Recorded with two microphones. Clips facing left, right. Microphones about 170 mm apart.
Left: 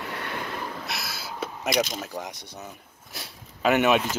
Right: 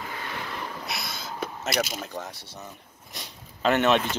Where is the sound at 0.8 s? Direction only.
Centre (ahead or behind).